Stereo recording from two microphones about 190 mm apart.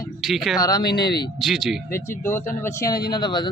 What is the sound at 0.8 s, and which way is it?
Speech, 60° left (ahead or behind).